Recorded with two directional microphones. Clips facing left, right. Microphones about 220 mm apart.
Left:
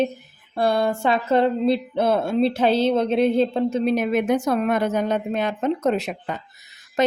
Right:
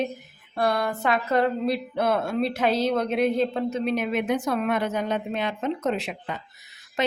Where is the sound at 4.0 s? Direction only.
45° left (ahead or behind).